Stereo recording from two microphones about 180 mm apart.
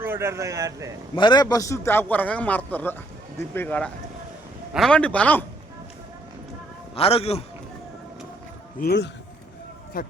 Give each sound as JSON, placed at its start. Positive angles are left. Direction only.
{"t": 0.0, "sound": "speech", "side_deg": -15}
{"t": 1.1, "sound": "a man's voice", "side_deg": 25}
{"t": 6.9, "sound": "a man's voice", "side_deg": 35}
{"t": 8.8, "sound": "speech", "side_deg": 65}
{"t": 10.0, "sound": "speech", "side_deg": 55}